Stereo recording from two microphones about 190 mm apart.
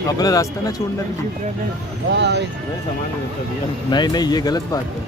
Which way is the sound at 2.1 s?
65° right (ahead or behind).